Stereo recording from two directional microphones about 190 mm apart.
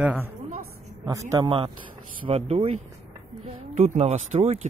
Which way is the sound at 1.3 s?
25° right (ahead or behind).